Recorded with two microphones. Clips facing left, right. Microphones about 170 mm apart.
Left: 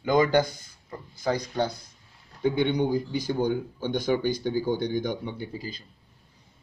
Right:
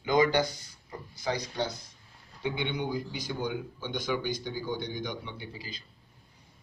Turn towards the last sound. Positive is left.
turn(degrees=45)  # may be behind; listen again after turning